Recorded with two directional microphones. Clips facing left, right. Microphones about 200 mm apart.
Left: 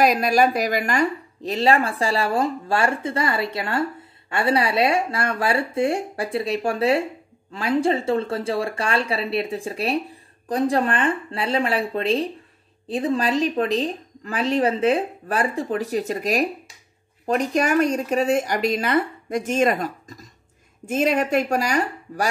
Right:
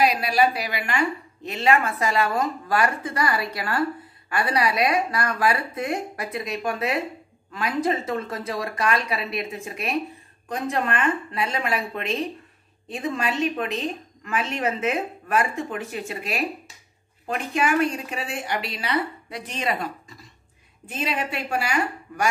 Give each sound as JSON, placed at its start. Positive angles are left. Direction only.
{"t": 0.0, "sound": "a woman's voice", "side_deg": 45}